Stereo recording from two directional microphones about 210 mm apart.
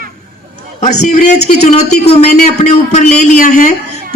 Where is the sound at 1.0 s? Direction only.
35° left (ahead or behind).